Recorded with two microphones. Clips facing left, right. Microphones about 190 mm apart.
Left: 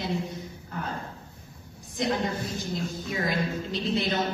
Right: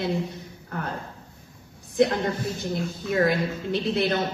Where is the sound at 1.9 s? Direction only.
60° right (ahead or behind).